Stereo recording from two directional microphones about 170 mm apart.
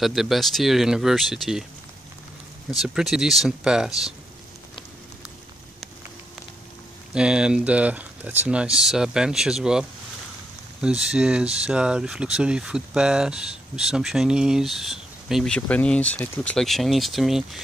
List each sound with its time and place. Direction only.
0.0 s speech: centre (ahead or behind)
2.8 s speech: centre (ahead or behind)
7.2 s speech: 5° right (ahead or behind)